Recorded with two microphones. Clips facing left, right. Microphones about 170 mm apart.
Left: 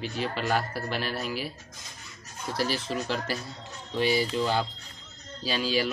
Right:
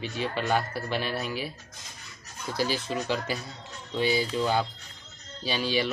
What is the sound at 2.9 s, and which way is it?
Speech, centre (ahead or behind).